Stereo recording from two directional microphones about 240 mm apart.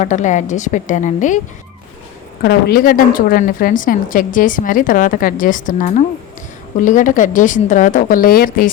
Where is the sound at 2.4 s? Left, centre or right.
Left.